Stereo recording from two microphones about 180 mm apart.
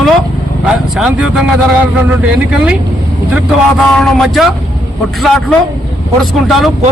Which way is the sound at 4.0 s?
Centre (ahead or behind).